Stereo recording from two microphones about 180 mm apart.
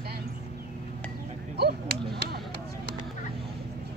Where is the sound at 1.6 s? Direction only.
65° right (ahead or behind).